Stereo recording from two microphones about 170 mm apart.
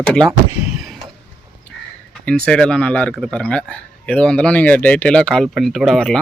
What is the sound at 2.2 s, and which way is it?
Speech, 5° left (ahead or behind).